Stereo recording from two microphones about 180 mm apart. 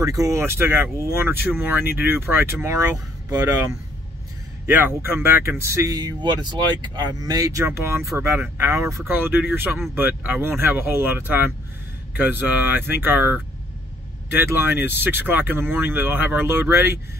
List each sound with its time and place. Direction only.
0.0 s speech: 20° right (ahead or behind)